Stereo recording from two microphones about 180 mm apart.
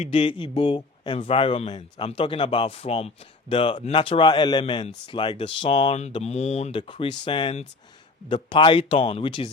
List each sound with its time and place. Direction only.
0.0 s speech: 30° left (ahead or behind)